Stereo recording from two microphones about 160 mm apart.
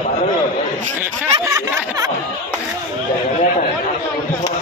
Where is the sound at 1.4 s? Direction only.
20° right (ahead or behind).